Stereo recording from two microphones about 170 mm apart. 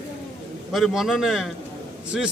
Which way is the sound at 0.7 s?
Centre (ahead or behind).